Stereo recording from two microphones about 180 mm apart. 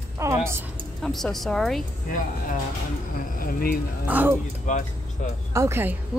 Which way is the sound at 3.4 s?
55° left (ahead or behind).